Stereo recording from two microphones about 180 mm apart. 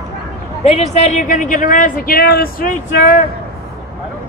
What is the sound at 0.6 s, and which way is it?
Speech, 35° left (ahead or behind).